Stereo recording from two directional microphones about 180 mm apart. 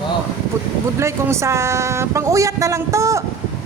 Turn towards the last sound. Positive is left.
turn(degrees=-15)  # may be behind; listen again after turning